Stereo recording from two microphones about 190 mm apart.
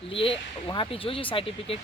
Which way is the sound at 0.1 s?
30° left (ahead or behind).